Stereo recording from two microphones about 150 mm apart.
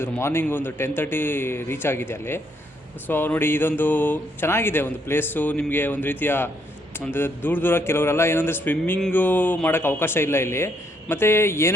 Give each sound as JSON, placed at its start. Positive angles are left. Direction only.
{"t": 0.0, "sound": "a man's voice", "side_deg": 15}